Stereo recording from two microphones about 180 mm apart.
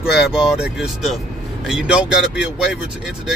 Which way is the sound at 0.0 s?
5° right (ahead or behind).